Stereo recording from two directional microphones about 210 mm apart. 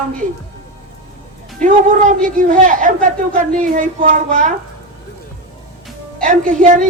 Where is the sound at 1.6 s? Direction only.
40° right (ahead or behind).